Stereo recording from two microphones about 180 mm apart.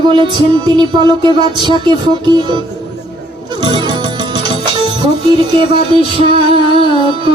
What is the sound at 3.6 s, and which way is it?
Music, 25° right (ahead or behind).